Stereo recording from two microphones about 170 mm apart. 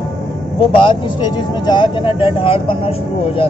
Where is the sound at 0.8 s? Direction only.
25° left (ahead or behind).